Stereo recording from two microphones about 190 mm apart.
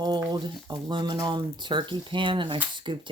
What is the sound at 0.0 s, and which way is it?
Speech, 20° right (ahead or behind).